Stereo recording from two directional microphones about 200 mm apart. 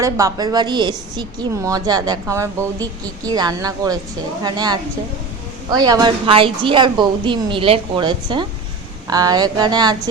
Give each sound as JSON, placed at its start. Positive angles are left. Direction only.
{"t": 0.0, "sound": "a woman's voice", "side_deg": -15}